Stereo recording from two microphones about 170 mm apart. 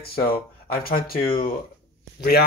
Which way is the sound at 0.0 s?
60° left (ahead or behind).